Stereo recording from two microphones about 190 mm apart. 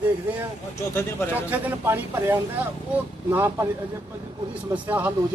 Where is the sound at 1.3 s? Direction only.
10° right (ahead or behind).